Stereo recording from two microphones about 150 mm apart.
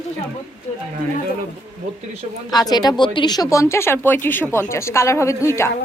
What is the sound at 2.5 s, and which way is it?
Speech, 25° left (ahead or behind).